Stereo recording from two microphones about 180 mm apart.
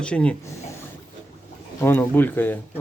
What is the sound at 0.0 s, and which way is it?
Speech, 5° left (ahead or behind).